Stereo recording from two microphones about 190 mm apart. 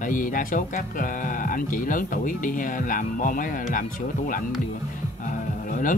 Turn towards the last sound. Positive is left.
turn(degrees=45)  # may be behind; listen again after turning